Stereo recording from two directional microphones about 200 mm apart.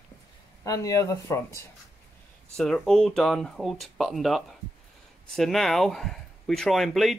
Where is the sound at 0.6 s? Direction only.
15° left (ahead or behind).